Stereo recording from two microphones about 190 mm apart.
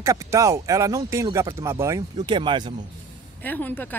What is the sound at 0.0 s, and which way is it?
Speech, 15° right (ahead or behind).